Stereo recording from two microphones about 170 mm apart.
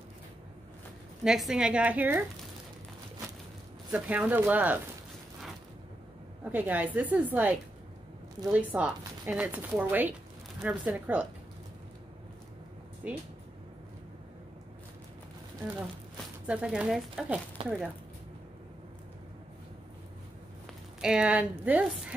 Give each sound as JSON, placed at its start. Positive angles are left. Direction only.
{"t": 1.2, "sound": "a woman's voice", "side_deg": -5}
{"t": 3.9, "sound": "a woman's voice", "side_deg": -10}
{"t": 6.4, "sound": "a woman's voice", "side_deg": -10}
{"t": 13.0, "sound": "speech", "side_deg": -10}
{"t": 16.4, "sound": "speech", "side_deg": -5}
{"t": 17.6, "sound": "speech", "side_deg": -30}
{"t": 21.0, "sound": "a woman's voice", "side_deg": -5}